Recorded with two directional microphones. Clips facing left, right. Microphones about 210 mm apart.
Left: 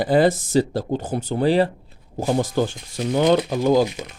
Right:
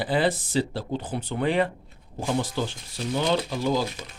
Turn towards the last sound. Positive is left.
turn(degrees=45)  # may be behind; listen again after turning